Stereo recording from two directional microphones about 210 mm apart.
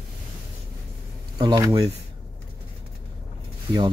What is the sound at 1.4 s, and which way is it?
Speech, 20° right (ahead or behind).